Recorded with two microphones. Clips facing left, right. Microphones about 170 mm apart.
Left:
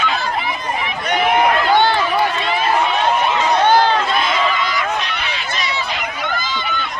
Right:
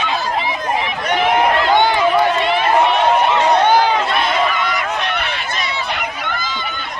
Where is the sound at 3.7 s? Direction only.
15° right (ahead or behind).